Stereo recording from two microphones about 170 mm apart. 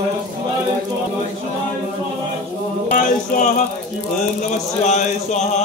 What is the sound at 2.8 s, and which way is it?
Speech, 50° left (ahead or behind).